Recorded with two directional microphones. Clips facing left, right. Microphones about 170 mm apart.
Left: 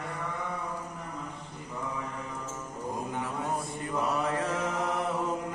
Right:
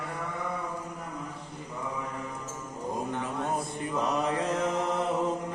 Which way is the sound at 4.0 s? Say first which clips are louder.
Right 1 dB; 20° right (ahead or behind).